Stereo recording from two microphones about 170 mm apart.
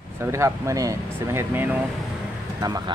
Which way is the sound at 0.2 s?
15° right (ahead or behind).